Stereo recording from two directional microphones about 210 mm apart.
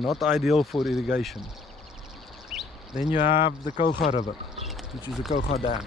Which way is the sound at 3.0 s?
35° left (ahead or behind).